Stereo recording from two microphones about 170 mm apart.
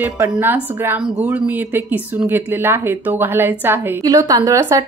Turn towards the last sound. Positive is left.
turn(degrees=-20)  # may be behind; listen again after turning